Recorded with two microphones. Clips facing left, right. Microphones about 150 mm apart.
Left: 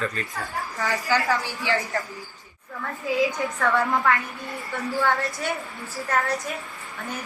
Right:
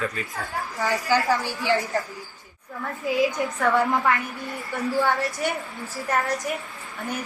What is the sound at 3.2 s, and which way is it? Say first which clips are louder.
A woman's voice: right 1 dB; 20° right (ahead or behind).